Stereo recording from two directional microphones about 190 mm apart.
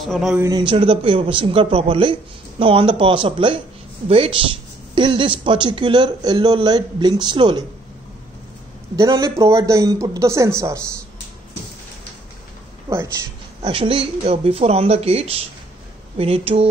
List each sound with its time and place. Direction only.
0.0 s a man's voice: centre (ahead or behind)
0.4 s speech: 20° right (ahead or behind)
8.9 s speech: 20° right (ahead or behind)
13.6 s speech: 30° right (ahead or behind)